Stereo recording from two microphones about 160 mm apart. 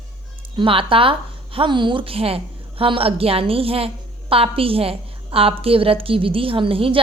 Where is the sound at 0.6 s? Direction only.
35° right (ahead or behind).